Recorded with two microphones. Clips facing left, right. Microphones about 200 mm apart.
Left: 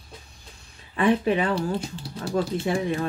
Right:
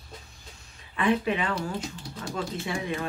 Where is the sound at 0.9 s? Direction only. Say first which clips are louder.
Left 4 dB; 35° left (ahead or behind).